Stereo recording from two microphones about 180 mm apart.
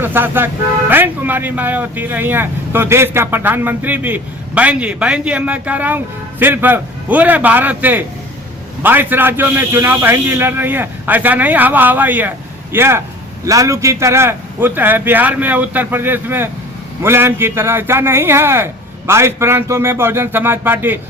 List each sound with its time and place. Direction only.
0.0 s a man's voice: 10° right (ahead or behind)